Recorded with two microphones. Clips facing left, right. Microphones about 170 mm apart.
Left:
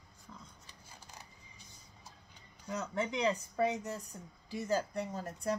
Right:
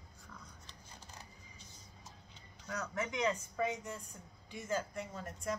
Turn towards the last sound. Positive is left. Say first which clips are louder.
# left 4 dB
turn(degrees=35)  # may be behind; listen again after turning